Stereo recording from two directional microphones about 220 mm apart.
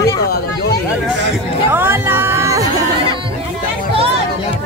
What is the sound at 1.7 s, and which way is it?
Speech, 10° right (ahead or behind).